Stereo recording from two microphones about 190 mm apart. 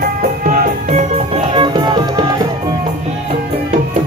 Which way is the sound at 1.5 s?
25° right (ahead or behind).